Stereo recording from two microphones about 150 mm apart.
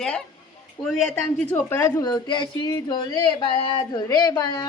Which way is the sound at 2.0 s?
30° left (ahead or behind).